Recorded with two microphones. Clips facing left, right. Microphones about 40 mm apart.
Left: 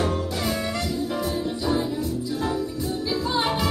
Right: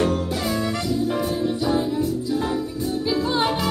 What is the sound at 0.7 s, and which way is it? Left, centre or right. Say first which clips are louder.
Music: right 3 dB; centre.